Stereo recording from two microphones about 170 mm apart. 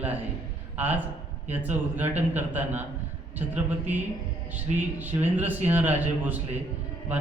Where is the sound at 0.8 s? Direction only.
10° right (ahead or behind).